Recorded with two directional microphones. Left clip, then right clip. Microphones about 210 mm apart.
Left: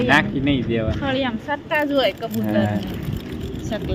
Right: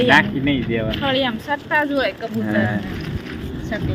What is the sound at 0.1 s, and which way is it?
Speech, 5° left (ahead or behind).